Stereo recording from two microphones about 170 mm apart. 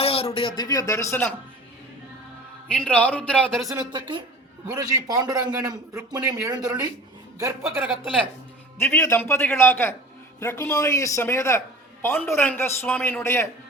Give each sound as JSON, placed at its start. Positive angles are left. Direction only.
{"t": 0.0, "sound": "a sound", "side_deg": 35}
{"t": 0.3, "sound": "speech", "side_deg": 25}
{"t": 2.7, "sound": "a man's voice", "side_deg": 10}
{"t": 3.7, "sound": "speech", "side_deg": -25}
{"t": 8.8, "sound": "a man's voice", "side_deg": 15}